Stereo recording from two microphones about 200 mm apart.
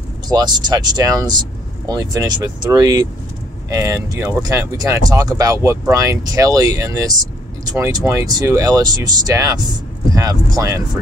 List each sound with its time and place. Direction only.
0.3 s speech: 20° right (ahead or behind)